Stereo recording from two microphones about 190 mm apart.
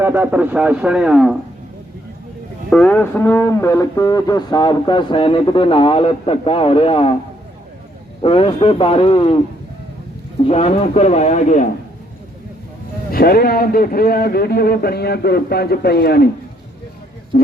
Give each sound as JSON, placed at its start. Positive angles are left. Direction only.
{"t": 0.0, "sound": "speech", "side_deg": -10}
{"t": 2.6, "sound": "speech", "side_deg": 5}
{"t": 8.2, "sound": "speech", "side_deg": 30}
{"t": 10.4, "sound": "a man's voice", "side_deg": 30}
{"t": 13.1, "sound": "a man's voice", "side_deg": 50}
{"t": 17.3, "sound": "speech", "side_deg": 50}